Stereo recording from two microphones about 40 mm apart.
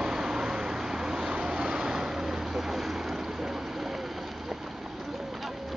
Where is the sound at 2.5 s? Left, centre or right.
Centre.